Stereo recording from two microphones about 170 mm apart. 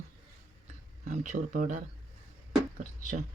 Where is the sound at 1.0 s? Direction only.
50° right (ahead or behind).